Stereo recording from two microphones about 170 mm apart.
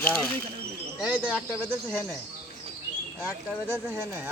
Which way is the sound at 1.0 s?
10° right (ahead or behind).